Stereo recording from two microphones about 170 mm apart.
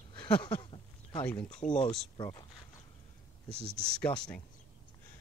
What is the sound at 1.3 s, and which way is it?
Speech, 40° left (ahead or behind).